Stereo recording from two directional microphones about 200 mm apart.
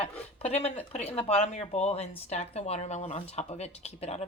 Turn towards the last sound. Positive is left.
turn(degrees=30)  # may be behind; listen again after turning